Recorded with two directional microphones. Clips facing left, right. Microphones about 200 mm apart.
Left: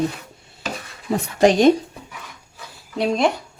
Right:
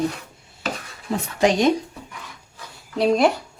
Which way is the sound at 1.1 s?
40° left (ahead or behind).